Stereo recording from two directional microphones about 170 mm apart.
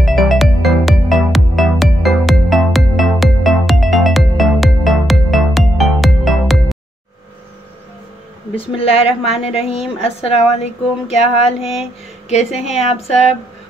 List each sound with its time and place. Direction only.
0.0 s music: centre (ahead or behind)
8.5 s speech: 35° left (ahead or behind)